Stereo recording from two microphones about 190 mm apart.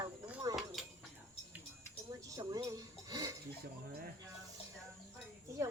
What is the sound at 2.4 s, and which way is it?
Speech, 20° right (ahead or behind).